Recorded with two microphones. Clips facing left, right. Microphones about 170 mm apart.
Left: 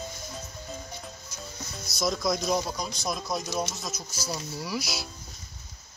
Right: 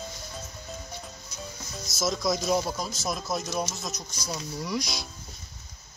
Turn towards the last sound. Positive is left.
turn(degrees=5)  # may be behind; listen again after turning